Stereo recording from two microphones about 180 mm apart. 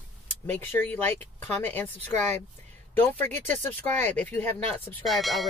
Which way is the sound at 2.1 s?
45° right (ahead or behind).